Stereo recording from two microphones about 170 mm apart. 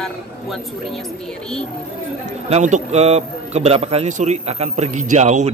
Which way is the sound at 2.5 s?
40° right (ahead or behind).